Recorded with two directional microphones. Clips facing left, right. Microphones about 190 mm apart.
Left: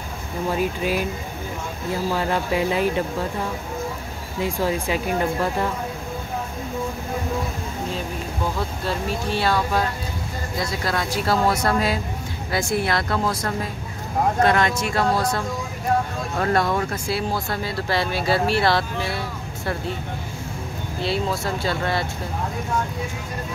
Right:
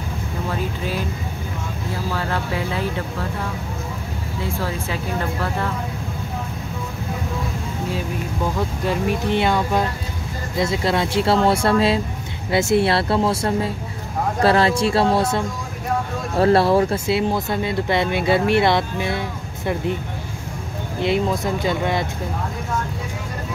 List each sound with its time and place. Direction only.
0.5 s speech: 15° left (ahead or behind)
2.1 s speech: 15° left (ahead or behind)
4.4 s speech: 15° left (ahead or behind)
8.5 s speech: 15° right (ahead or behind)
21.0 s speech: 20° right (ahead or behind)